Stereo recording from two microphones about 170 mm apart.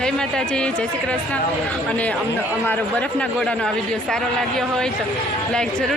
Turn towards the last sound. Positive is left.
turn(degrees=5)  # may be behind; listen again after turning